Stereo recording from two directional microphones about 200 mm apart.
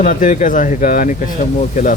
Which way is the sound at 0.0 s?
40° left (ahead or behind).